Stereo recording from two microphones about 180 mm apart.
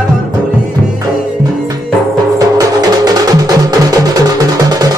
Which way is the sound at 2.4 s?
20° right (ahead or behind).